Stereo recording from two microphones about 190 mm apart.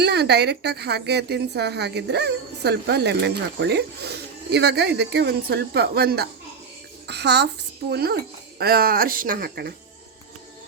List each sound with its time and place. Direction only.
0.0 s a woman's voice: 60° right (ahead or behind)